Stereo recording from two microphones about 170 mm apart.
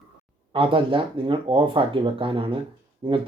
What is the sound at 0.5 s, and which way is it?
Speech, 30° right (ahead or behind).